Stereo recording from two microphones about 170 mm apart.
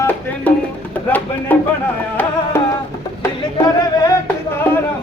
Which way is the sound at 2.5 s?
15° left (ahead or behind).